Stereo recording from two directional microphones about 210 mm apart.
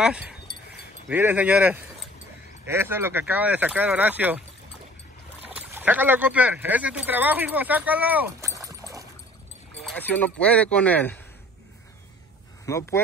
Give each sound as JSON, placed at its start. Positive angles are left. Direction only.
{"t": 0.0, "sound": "speech", "side_deg": -5}
{"t": 5.7, "sound": "speech", "side_deg": -10}
{"t": 9.8, "sound": "speech", "side_deg": 5}
{"t": 12.6, "sound": "speech", "side_deg": 15}